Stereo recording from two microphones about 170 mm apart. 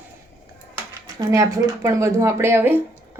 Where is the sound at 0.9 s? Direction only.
20° right (ahead or behind).